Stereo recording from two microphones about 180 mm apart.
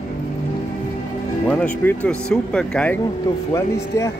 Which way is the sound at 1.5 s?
10° left (ahead or behind).